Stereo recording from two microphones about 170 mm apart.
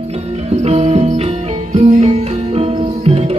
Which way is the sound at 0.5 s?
40° right (ahead or behind).